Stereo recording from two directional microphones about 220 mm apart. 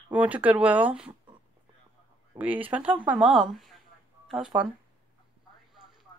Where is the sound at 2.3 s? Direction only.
5° right (ahead or behind).